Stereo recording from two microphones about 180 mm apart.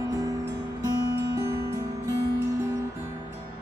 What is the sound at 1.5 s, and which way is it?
Music, 15° right (ahead or behind).